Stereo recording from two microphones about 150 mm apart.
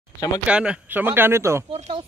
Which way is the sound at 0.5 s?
5° right (ahead or behind).